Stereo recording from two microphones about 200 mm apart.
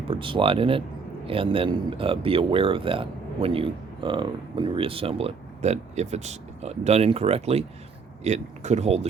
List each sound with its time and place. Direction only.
0.1 s speech: 25° right (ahead or behind)